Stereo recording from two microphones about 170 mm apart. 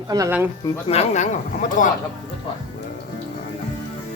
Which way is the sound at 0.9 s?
40° left (ahead or behind).